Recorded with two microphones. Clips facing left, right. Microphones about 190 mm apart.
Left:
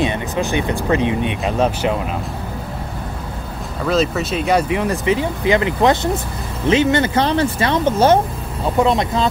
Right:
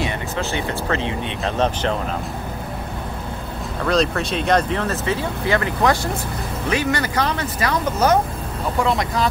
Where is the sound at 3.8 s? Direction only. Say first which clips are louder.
Left 2 dB; 5° left (ahead or behind).